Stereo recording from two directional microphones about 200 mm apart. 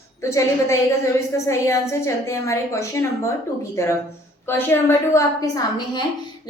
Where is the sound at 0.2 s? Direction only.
15° left (ahead or behind).